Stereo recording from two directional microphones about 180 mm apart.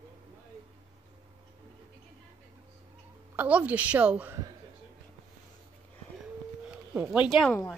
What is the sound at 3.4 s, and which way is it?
A woman's voice, 10° right (ahead or behind).